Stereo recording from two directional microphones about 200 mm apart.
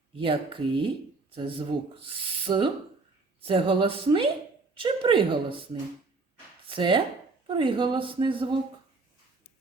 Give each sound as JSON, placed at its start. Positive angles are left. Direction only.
{"t": 0.2, "sound": "speech", "side_deg": -25}